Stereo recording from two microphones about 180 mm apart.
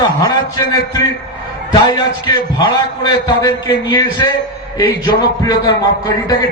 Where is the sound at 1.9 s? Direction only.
25° left (ahead or behind).